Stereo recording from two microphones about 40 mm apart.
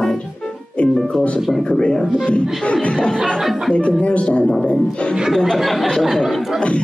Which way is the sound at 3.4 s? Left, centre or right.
Centre.